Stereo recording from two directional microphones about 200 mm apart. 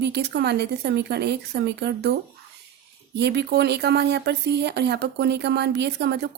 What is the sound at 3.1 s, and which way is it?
Speech, 55° right (ahead or behind).